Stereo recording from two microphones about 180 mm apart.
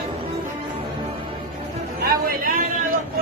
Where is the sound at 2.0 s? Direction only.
55° right (ahead or behind).